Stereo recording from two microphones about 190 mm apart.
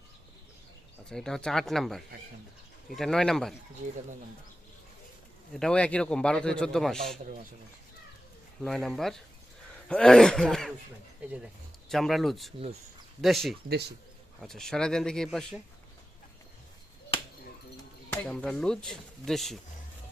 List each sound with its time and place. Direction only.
1.1 s a man's voice: 5° left (ahead or behind)
5.5 s a man's voice: 5° left (ahead or behind)
8.6 s a man's voice: centre (ahead or behind)
11.9 s a man's voice: centre (ahead or behind)
13.7 s speech: 60° right (ahead or behind)
14.4 s a man's voice: centre (ahead or behind)
18.1 s a man's voice: 5° left (ahead or behind)